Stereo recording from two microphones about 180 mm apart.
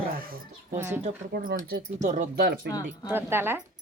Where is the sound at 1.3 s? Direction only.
55° right (ahead or behind).